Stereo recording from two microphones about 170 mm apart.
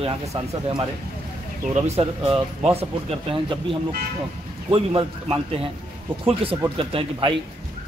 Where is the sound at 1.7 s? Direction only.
40° right (ahead or behind).